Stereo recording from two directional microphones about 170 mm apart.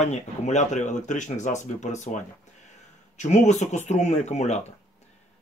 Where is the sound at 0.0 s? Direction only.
40° left (ahead or behind).